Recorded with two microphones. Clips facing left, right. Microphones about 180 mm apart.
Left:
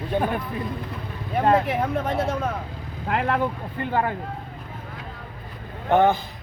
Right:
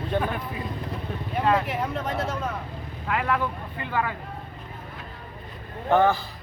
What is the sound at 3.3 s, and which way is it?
Speech, 50° left (ahead or behind).